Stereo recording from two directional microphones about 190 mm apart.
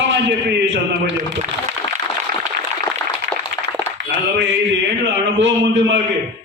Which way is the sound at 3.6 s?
20° left (ahead or behind).